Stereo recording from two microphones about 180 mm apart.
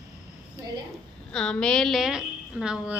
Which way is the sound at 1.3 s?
5° left (ahead or behind).